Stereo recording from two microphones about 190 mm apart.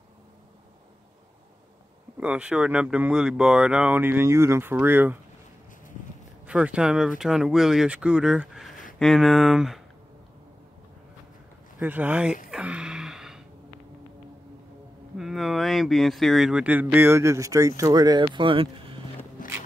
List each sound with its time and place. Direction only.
2.1 s speech: 5° right (ahead or behind)
6.4 s speech: 5° right (ahead or behind)
11.8 s speech: 10° right (ahead or behind)
12.4 s gasp: 5° right (ahead or behind)
15.1 s speech: centre (ahead or behind); by 18.9 s 25° right (ahead or behind)
19.4 s walk: 45° left (ahead or behind)